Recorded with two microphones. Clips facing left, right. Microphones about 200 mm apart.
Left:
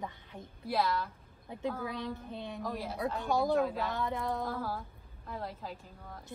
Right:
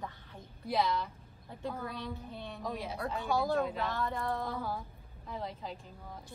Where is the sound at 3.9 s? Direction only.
15° left (ahead or behind).